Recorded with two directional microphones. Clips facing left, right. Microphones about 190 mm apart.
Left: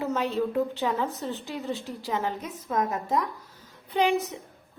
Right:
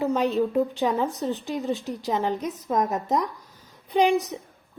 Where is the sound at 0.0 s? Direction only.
15° right (ahead or behind).